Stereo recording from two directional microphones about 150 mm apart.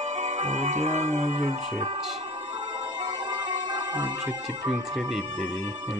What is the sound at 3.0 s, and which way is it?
Music, 30° right (ahead or behind).